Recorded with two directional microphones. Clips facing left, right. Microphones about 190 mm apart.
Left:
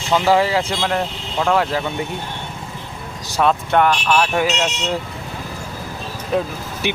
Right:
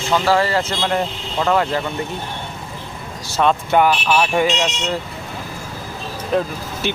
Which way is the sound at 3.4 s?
Centre (ahead or behind).